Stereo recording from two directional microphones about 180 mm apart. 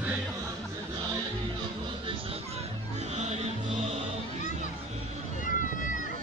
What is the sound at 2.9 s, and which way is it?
Music, 40° right (ahead or behind).